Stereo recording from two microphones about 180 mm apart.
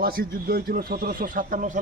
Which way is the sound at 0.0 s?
55° right (ahead or behind).